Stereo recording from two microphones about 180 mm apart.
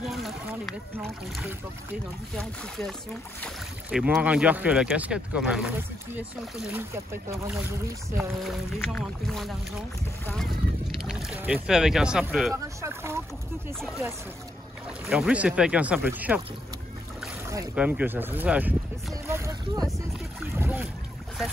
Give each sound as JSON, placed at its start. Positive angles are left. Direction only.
{"t": 0.1, "sound": "a sound", "side_deg": 0}
{"t": 1.0, "sound": "speech", "side_deg": 0}
{"t": 8.2, "sound": "speech", "side_deg": 0}
{"t": 12.5, "sound": "speech", "side_deg": -15}
{"t": 13.7, "sound": "speech", "side_deg": 0}
{"t": 15.0, "sound": "speech", "side_deg": -5}
{"t": 17.7, "sound": "speech", "side_deg": -10}
{"t": 20.5, "sound": "boat", "side_deg": -10}